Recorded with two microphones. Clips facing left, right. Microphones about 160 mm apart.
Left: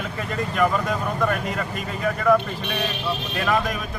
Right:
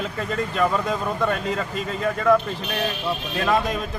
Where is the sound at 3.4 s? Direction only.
25° right (ahead or behind).